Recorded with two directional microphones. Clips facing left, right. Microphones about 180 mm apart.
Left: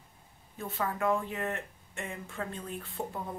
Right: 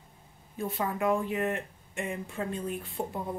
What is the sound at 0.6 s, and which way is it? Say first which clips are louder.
Speech: right 2 dB; 15° right (ahead or behind).